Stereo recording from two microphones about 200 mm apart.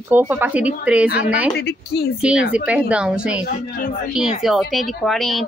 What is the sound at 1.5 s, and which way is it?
Speech, 55° left (ahead or behind).